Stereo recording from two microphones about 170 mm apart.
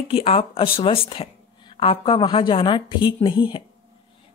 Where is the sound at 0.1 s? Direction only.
35° left (ahead or behind).